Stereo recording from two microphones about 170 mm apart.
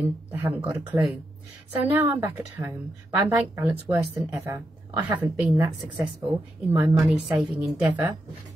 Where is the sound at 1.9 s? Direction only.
10° right (ahead or behind).